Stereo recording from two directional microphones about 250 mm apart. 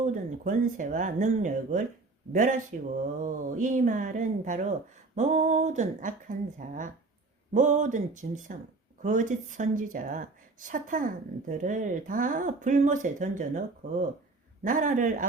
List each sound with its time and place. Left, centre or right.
0.0 s a woman's voice: right